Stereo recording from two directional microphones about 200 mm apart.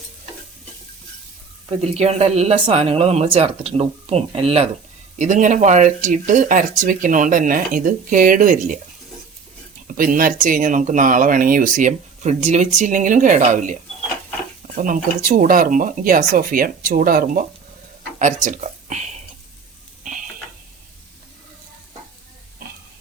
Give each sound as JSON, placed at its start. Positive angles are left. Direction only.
{"t": 1.9, "sound": "speech", "side_deg": -30}
{"t": 9.8, "sound": "speech", "side_deg": -45}
{"t": 14.8, "sound": "speech", "side_deg": -45}